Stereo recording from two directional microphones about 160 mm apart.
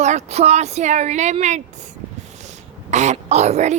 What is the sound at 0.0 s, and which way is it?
Speech, 45° right (ahead or behind).